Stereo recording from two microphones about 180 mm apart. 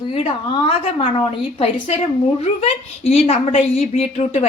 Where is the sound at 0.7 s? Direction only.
30° left (ahead or behind).